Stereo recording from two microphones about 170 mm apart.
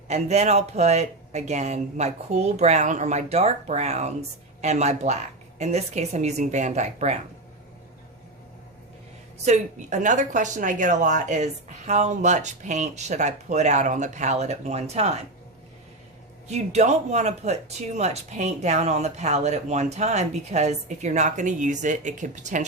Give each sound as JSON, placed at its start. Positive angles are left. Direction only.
{"t": 0.1, "sound": "speech", "side_deg": -40}
{"t": 9.4, "sound": "speech", "side_deg": -45}
{"t": 16.5, "sound": "speech", "side_deg": -40}